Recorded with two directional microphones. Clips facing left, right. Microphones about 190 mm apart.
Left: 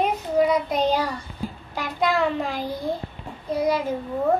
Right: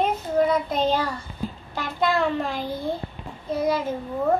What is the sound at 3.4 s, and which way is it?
Speech, 15° left (ahead or behind).